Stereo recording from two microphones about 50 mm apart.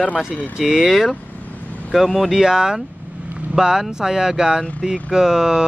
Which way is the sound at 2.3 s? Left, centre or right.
Centre.